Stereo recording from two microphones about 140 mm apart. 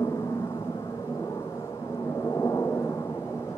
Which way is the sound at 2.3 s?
20° left (ahead or behind).